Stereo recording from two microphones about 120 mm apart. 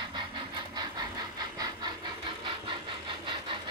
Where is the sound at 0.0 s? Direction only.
40° right (ahead or behind).